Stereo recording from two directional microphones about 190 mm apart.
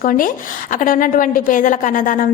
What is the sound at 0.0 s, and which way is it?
A woman's voice, 45° left (ahead or behind).